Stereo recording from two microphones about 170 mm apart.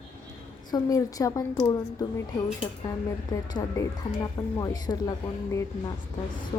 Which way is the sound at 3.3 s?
20° left (ahead or behind).